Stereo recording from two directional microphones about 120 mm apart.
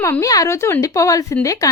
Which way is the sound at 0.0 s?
25° left (ahead or behind).